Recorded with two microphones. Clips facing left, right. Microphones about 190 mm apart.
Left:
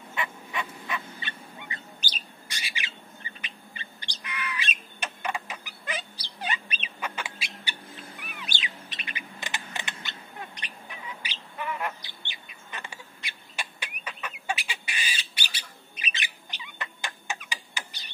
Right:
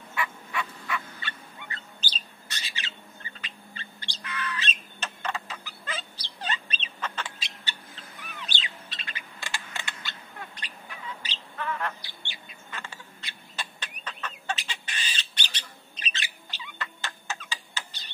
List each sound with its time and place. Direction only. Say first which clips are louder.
0.1 s fowl: right 1 dB; 20° left (ahead or behind)
3.3 s bird: even; 15° left (ahead or behind)